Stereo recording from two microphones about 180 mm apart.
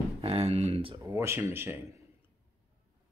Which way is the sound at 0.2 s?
30° right (ahead or behind).